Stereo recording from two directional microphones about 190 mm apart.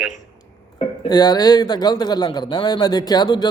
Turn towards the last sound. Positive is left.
turn(degrees=20)  # may be behind; listen again after turning